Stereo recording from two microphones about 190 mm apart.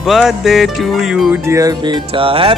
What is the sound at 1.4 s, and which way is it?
Speech, 15° right (ahead or behind).